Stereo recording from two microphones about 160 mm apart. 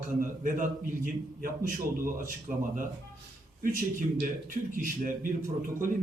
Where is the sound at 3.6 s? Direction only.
55° right (ahead or behind).